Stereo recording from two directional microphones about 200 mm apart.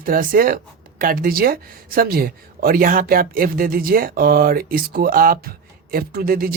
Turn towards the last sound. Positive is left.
turn(degrees=-45)  # may be behind; listen again after turning